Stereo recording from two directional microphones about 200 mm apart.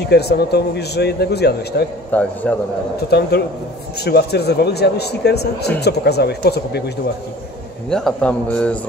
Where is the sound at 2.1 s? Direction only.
5° left (ahead or behind).